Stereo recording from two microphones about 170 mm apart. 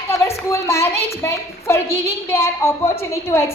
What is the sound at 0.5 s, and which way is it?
A woman's voice, 15° left (ahead or behind).